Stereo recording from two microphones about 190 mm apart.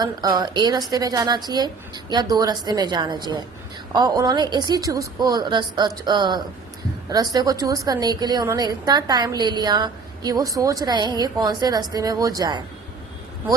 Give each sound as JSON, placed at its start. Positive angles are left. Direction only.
{"t": 0.0, "sound": "a woman's voice", "side_deg": -20}